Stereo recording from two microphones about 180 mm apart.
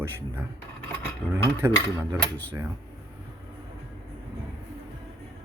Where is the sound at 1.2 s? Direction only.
10° left (ahead or behind).